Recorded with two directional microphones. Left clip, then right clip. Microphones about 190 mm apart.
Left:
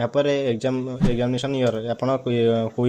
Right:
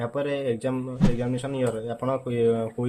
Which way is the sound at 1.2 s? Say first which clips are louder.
Left 8 dB; 40° left (ahead or behind).